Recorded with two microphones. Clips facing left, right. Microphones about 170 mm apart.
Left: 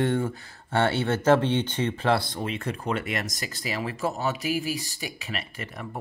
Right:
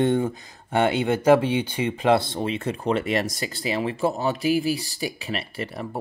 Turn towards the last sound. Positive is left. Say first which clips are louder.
# right 6 dB
turn(degrees=-30)  # may be behind; listen again after turning